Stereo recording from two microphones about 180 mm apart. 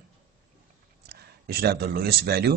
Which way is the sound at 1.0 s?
60° right (ahead or behind).